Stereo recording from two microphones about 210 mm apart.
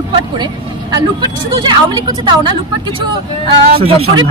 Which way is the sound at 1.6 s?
20° right (ahead or behind).